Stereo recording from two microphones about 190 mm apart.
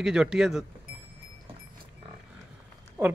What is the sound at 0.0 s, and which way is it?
Speech, 5° right (ahead or behind).